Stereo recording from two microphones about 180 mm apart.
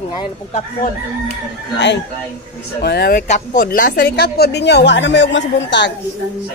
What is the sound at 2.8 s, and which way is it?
Speech, 60° left (ahead or behind).